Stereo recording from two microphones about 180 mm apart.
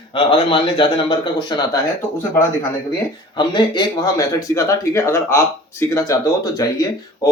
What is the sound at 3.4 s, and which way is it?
Speech, 25° left (ahead or behind).